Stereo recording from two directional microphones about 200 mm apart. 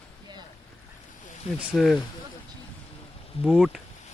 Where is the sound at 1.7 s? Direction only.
Centre (ahead or behind).